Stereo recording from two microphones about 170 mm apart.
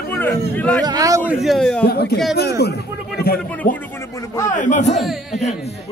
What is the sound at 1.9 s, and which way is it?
Speech, 70° left (ahead or behind).